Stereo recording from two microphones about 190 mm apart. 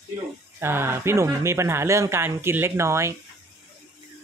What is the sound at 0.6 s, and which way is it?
Speech, 10° right (ahead or behind).